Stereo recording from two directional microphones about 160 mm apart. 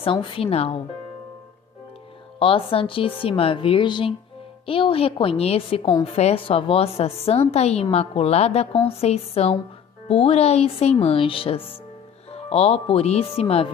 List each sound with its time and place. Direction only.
0.0 s a woman's voice: 35° left (ahead or behind)
2.3 s a woman's voice: 35° left (ahead or behind)